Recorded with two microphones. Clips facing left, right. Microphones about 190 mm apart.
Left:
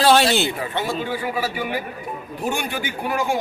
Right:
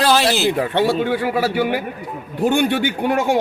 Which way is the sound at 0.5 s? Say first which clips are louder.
Right 8 dB; 65° right (ahead or behind).